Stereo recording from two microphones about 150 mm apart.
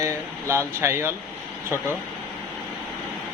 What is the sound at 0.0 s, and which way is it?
Speech, 20° right (ahead or behind).